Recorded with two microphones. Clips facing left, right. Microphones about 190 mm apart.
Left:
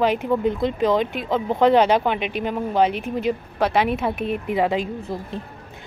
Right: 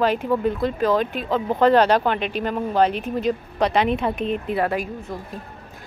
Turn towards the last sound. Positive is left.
turn(degrees=25)  # may be behind; listen again after turning